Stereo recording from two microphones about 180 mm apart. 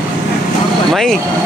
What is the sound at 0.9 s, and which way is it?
Speech, 5° left (ahead or behind).